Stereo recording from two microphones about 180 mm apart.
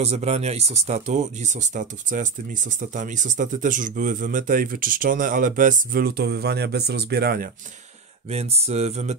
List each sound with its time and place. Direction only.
0.0 s speech: 35° right (ahead or behind); by 7.4 s 60° right (ahead or behind)
8.3 s speech: 35° right (ahead or behind)